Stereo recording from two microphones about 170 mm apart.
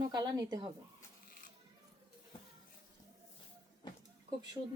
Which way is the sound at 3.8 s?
25° left (ahead or behind).